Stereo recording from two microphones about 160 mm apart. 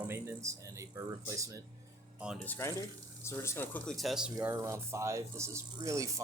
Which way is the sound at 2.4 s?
10° left (ahead or behind).